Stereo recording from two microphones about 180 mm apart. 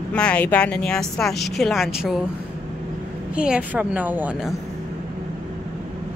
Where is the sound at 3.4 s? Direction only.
5° right (ahead or behind).